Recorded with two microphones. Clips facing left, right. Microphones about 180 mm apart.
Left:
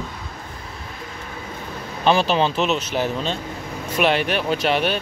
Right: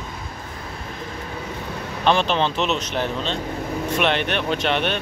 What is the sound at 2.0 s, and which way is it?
Speech, 5° left (ahead or behind).